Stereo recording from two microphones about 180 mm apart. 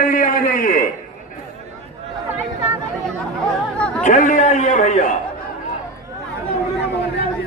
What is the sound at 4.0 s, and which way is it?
A man's voice, 45° left (ahead or behind).